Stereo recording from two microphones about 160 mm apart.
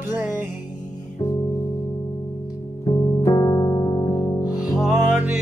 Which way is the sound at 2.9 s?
25° left (ahead or behind).